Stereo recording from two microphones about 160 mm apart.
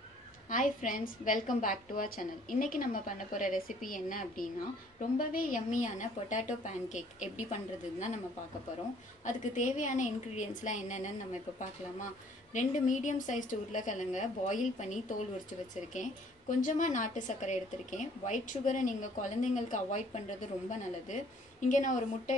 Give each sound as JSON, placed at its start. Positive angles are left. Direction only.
{"t": 0.5, "sound": "a woman's voice", "side_deg": 55}
{"t": 9.2, "sound": "a woman's voice", "side_deg": 50}
{"t": 12.5, "sound": "a woman's voice", "side_deg": 50}